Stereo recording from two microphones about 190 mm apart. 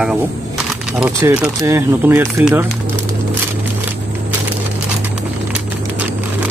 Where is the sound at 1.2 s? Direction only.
15° right (ahead or behind).